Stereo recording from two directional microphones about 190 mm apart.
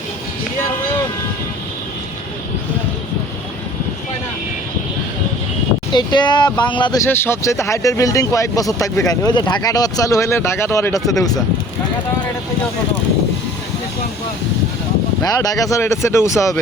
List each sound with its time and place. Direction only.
5.9 s speech: 25° left (ahead or behind)
7.1 s speech: 10° left (ahead or behind)
15.2 s speech: 20° left (ahead or behind)